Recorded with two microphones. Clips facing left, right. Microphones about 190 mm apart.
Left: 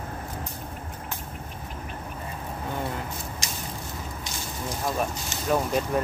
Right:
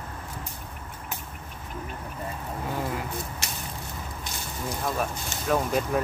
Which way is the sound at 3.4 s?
60° right (ahead or behind).